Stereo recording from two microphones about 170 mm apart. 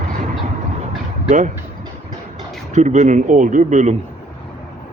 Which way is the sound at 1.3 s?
45° right (ahead or behind).